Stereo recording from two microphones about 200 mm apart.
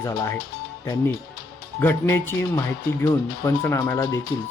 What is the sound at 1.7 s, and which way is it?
Speech, 10° left (ahead or behind).